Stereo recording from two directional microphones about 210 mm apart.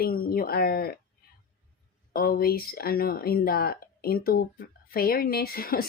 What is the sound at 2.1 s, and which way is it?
Speech, 45° left (ahead or behind).